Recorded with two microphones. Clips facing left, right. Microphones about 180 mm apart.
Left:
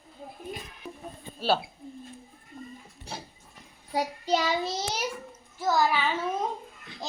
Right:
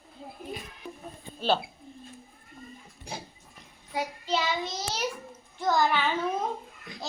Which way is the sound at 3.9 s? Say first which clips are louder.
Left 3 dB; 40° left (ahead or behind).